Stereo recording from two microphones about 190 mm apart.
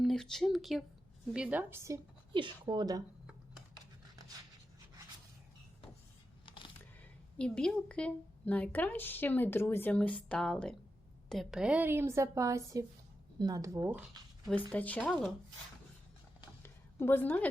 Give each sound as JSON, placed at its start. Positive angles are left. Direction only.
{"t": 0.0, "sound": "a woman's voice", "side_deg": 0}
{"t": 2.3, "sound": "a woman's voice", "side_deg": -25}
{"t": 6.4, "sound": "a sound", "side_deg": 25}
{"t": 7.3, "sound": "a woman's voice", "side_deg": 5}
{"t": 14.7, "sound": "a woman's voice", "side_deg": 10}
{"t": 16.6, "sound": "a sound", "side_deg": 10}